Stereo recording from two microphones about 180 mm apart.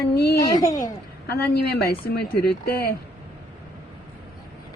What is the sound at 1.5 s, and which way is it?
Speech, 60° left (ahead or behind).